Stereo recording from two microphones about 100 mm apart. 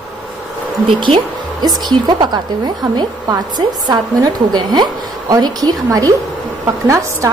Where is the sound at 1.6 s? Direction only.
40° right (ahead or behind).